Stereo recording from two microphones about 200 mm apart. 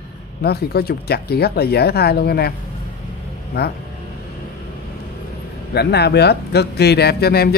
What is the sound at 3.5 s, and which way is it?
Speech, 50° left (ahead or behind).